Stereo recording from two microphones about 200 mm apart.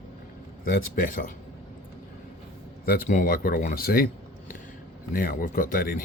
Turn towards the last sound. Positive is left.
turn(degrees=45)  # may be behind; listen again after turning